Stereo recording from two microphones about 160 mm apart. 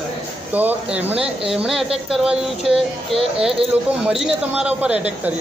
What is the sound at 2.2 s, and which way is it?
Speech, 5° right (ahead or behind).